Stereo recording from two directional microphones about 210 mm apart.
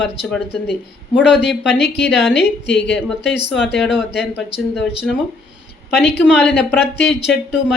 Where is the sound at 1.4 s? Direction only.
5° right (ahead or behind).